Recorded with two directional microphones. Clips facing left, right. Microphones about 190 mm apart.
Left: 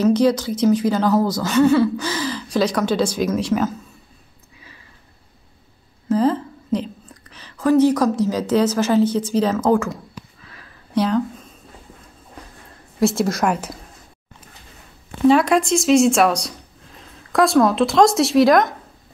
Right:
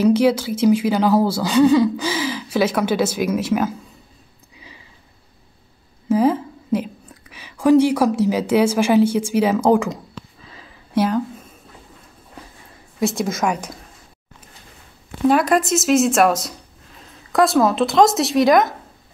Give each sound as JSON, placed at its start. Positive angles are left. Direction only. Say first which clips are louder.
{"t": 0.0, "sound": "a woman's voice", "louder": "right 1 dB", "side_deg": -10}
{"t": 6.0, "sound": "a woman's voice", "louder": "right 1 dB", "side_deg": -10}
{"t": 10.4, "sound": "a sound", "louder": "right 2 dB", "side_deg": -20}
{"t": 11.0, "sound": "speech", "louder": "even", "side_deg": -5}
{"t": 13.0, "sound": "speech", "louder": "left 2 dB", "side_deg": 0}
{"t": 15.2, "sound": "speech", "louder": "left 2 dB", "side_deg": 0}